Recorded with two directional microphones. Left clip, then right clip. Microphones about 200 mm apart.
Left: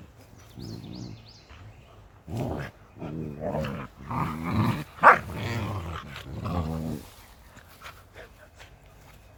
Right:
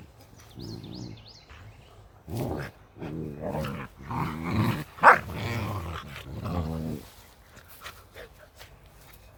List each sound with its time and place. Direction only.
0.6 s a sound: 50° right (ahead or behind)
2.3 s dog: 20° right (ahead or behind); by 6.9 s centre (ahead or behind)
7.5 s dog: 25° right (ahead or behind)